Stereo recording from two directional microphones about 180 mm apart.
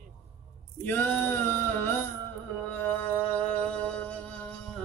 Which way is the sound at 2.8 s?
5° left (ahead or behind).